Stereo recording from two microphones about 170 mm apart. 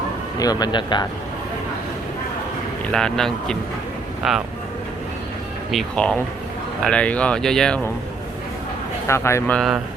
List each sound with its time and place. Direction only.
0.3 s speech: 25° left (ahead or behind)
2.9 s speech: 5° left (ahead or behind)
5.7 s speech: 5° left (ahead or behind)
9.0 s speech: 15° left (ahead or behind)
9.6 s speech: centre (ahead or behind)